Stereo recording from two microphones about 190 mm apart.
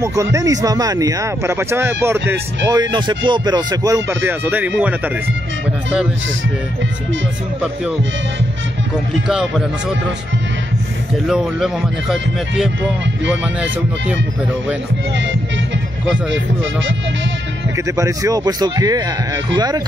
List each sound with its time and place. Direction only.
0.0 s a man's voice: 15° right (ahead or behind)
11.2 s speech: centre (ahead or behind)
17.7 s a man's voice: 15° right (ahead or behind)